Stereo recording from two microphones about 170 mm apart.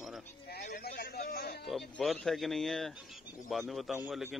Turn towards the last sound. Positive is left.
turn(degrees=-5)  # may be behind; listen again after turning